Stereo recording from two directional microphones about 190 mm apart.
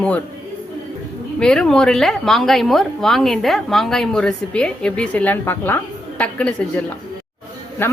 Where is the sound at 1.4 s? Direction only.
5° left (ahead or behind).